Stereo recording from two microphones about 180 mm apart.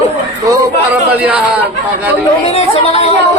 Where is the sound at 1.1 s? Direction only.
10° right (ahead or behind).